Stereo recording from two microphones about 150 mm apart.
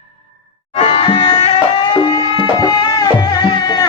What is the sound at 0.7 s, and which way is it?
Music, 40° left (ahead or behind).